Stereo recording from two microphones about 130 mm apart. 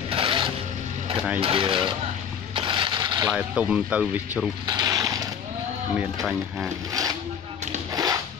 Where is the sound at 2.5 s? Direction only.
40° right (ahead or behind).